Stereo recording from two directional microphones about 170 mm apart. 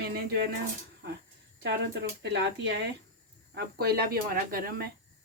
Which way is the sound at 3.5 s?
65° right (ahead or behind).